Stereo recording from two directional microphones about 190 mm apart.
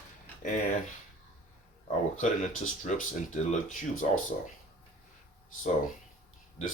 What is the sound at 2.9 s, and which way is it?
Speech, 40° left (ahead or behind).